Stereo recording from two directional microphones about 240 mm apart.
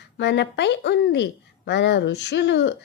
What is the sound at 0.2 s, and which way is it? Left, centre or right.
A woman's voice, left.